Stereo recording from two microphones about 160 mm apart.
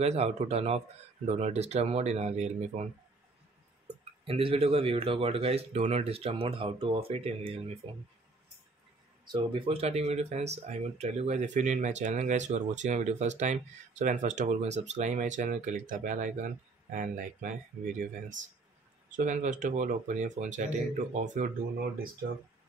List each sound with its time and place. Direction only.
0.0 s speech: 40° right (ahead or behind)
4.2 s speech: 35° right (ahead or behind)
9.2 s speech: 30° right (ahead or behind); by 21.5 s 50° right (ahead or behind)